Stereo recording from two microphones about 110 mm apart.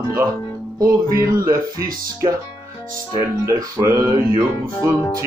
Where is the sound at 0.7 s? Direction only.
30° right (ahead or behind).